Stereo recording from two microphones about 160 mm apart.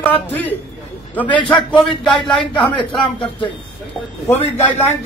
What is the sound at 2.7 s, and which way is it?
Speech, 30° left (ahead or behind).